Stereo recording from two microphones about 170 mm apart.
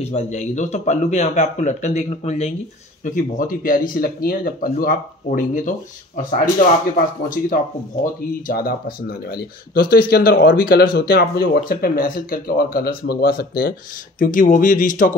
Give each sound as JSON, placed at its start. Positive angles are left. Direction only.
{"t": 0.0, "sound": "speech", "side_deg": 40}
{"t": 3.1, "sound": "speech", "side_deg": 50}
{"t": 8.0, "sound": "speech", "side_deg": 55}
{"t": 14.2, "sound": "speech", "side_deg": 50}